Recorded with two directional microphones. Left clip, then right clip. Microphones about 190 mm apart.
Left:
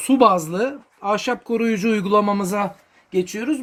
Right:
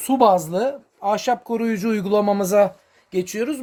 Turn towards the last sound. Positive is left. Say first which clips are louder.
# left 1 dB
turn(degrees=-55)  # may be behind; listen again after turning